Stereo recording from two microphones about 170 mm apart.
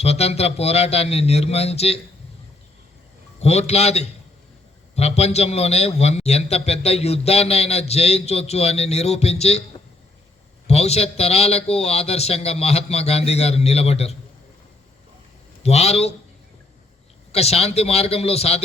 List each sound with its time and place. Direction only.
0.0 s a man's voice: 35° left (ahead or behind)
3.4 s a man's voice: 40° left (ahead or behind)
10.7 s a man's voice: 40° left (ahead or behind)
15.6 s a man's voice: 40° left (ahead or behind)
17.3 s a man's voice: 35° left (ahead or behind)